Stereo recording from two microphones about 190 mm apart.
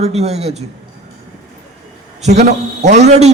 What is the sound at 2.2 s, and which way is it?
A man's voice, 35° right (ahead or behind).